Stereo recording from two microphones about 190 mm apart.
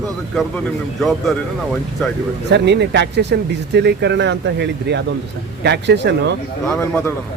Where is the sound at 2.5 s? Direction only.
65° right (ahead or behind).